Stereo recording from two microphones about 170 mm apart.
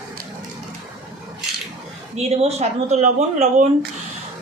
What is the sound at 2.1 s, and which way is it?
Speech, 40° right (ahead or behind).